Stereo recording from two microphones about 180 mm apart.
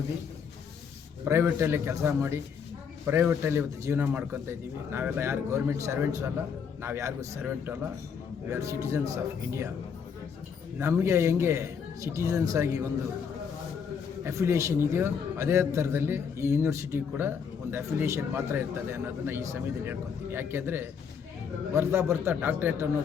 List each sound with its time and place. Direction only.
1.2 s a man's voice: 10° right (ahead or behind)
10.8 s a man's voice: 15° right (ahead or behind)
14.3 s a man's voice: 15° right (ahead or behind)